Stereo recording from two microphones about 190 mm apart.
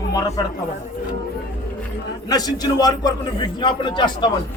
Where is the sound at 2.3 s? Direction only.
20° left (ahead or behind).